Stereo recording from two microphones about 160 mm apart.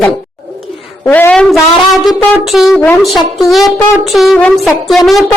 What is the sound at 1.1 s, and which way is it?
A woman's voice, 10° left (ahead or behind).